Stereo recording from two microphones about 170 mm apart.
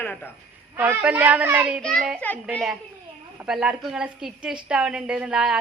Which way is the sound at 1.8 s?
Centre (ahead or behind).